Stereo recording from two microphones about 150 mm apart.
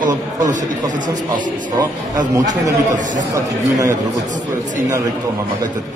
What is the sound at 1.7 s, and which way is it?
A man's voice, 25° right (ahead or behind).